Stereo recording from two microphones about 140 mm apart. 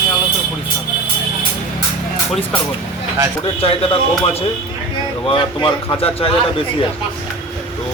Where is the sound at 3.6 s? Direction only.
45° left (ahead or behind).